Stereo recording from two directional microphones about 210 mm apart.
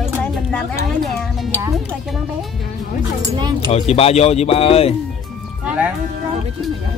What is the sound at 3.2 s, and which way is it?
Speech, 20° right (ahead or behind).